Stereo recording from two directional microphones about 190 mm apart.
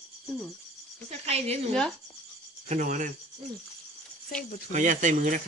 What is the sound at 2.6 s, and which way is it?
Speech, 40° right (ahead or behind).